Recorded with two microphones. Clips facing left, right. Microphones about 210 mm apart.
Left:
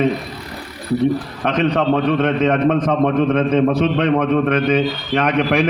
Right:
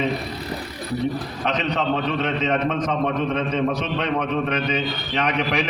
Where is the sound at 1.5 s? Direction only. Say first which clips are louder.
Left 7 dB; 50° left (ahead or behind).